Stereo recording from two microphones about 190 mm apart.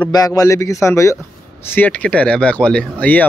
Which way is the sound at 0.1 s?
20° left (ahead or behind).